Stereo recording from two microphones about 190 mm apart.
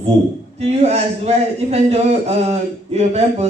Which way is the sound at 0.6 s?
35° right (ahead or behind).